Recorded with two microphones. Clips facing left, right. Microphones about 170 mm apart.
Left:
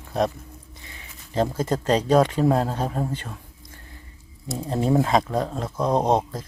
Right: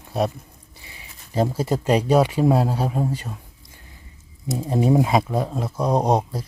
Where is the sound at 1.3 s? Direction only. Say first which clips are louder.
Right 1 dB; 10° right (ahead or behind).